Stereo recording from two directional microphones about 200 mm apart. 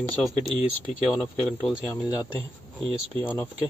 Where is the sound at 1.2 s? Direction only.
5° left (ahead or behind).